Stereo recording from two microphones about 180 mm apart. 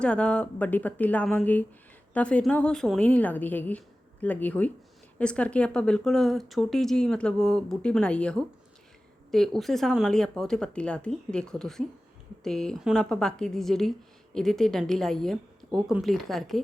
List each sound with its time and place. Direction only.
0.0 s a woman's voice: 5° left (ahead or behind)